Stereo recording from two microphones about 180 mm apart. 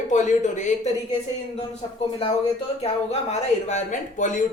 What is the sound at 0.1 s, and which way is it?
Speech, 40° left (ahead or behind).